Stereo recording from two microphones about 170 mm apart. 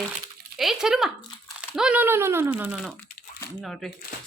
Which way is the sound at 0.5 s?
Centre (ahead or behind).